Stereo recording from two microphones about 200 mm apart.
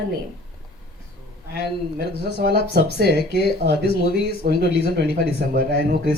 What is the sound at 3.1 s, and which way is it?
Speech, 50° left (ahead or behind).